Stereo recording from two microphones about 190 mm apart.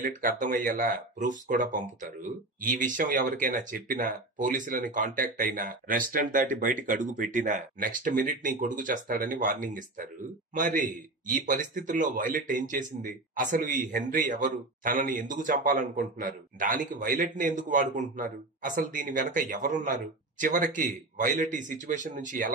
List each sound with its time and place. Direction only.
0.0 s speech: 45° right (ahead or behind)